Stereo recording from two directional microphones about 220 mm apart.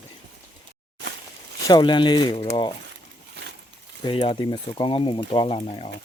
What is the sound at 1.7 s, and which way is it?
Speech, 20° left (ahead or behind).